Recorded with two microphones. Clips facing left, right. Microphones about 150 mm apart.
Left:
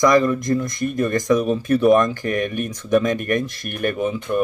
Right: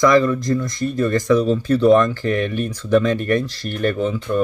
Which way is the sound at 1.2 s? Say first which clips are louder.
Right 2 dB; 15° left (ahead or behind).